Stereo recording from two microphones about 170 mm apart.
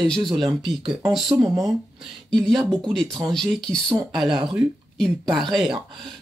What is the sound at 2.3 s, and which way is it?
Speech, centre (ahead or behind).